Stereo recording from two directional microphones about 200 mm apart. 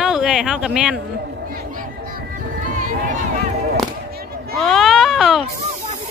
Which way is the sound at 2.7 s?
40° right (ahead or behind).